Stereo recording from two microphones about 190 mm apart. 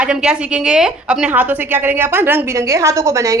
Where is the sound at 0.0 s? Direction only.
5° right (ahead or behind).